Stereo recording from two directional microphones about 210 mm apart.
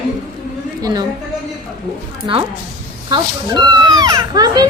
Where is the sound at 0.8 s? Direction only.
15° right (ahead or behind).